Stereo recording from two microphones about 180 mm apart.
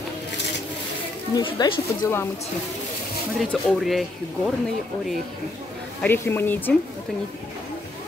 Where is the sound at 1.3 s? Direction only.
25° left (ahead or behind).